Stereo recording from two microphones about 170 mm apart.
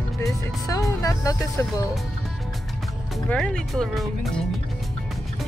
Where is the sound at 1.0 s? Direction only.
20° left (ahead or behind).